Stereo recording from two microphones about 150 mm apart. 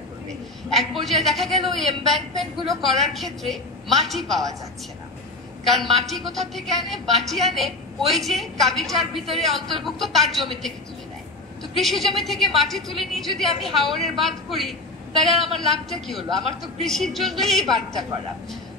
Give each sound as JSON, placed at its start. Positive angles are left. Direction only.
{"t": 0.7, "sound": "a woman's voice", "side_deg": 0}
{"t": 5.7, "sound": "a woman's voice", "side_deg": 0}
{"t": 11.8, "sound": "a woman's voice", "side_deg": 0}